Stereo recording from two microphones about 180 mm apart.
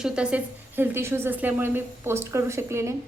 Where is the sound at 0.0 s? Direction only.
5° right (ahead or behind).